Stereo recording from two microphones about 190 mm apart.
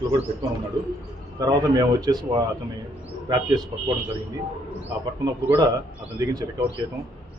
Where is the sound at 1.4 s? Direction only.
20° right (ahead or behind).